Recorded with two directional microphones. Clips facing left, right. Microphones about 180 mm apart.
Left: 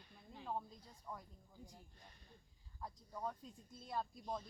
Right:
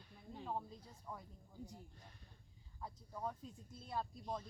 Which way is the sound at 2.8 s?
5° right (ahead or behind).